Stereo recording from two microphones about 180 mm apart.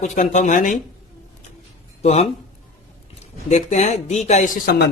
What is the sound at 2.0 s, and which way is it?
A man's voice, 35° left (ahead or behind).